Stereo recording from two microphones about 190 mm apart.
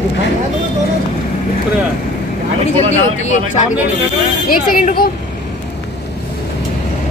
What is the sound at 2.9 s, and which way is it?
Speech, 35° left (ahead or behind).